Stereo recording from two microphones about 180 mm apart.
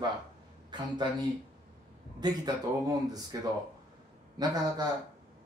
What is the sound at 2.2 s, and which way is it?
Speech, 20° right (ahead or behind).